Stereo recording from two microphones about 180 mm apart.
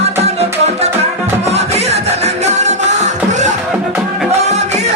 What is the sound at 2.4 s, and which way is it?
Music, 40° right (ahead or behind).